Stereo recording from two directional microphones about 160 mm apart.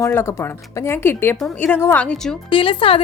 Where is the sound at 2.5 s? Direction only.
35° left (ahead or behind).